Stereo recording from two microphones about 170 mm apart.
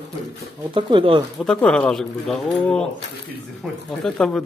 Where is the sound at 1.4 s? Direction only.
5° left (ahead or behind).